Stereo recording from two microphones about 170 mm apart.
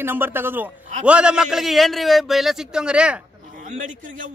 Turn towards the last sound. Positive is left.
turn(degrees=-50)  # may be behind; listen again after turning